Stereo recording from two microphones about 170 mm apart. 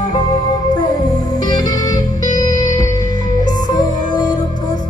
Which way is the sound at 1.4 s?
25° left (ahead or behind).